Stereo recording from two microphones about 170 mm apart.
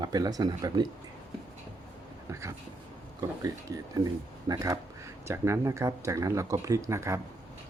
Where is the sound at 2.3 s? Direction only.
15° right (ahead or behind).